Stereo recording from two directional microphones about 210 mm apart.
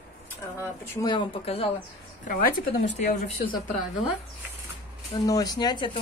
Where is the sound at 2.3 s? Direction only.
40° left (ahead or behind).